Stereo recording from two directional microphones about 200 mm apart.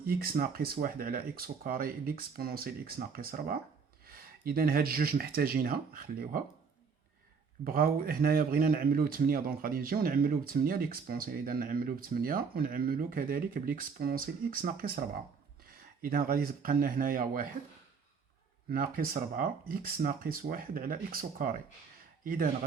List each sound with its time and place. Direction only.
0.0 s speech: 45° right (ahead or behind)
7.6 s speech: 45° right (ahead or behind)
18.9 s a man's voice: 45° right (ahead or behind)